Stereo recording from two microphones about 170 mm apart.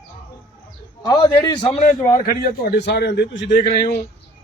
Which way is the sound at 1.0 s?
20° left (ahead or behind).